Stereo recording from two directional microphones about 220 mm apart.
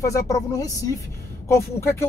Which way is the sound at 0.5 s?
15° left (ahead or behind).